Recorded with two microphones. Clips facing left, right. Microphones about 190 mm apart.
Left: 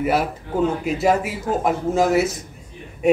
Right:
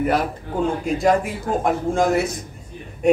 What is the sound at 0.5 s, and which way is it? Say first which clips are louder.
Speech: left 1 dB; 5° left (ahead or behind).